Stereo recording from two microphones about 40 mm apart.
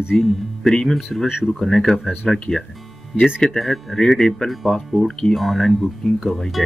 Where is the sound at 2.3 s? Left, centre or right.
Centre.